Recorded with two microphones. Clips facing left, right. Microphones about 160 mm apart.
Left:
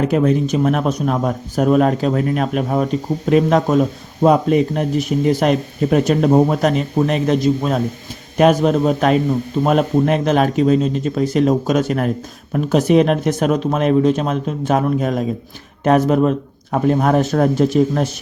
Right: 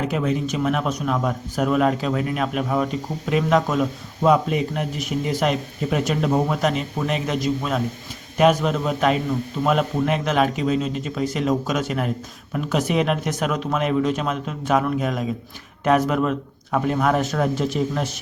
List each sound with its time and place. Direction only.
0.1 s a man's voice: 45° left (ahead or behind)
8.4 s a man's voice: 45° left (ahead or behind)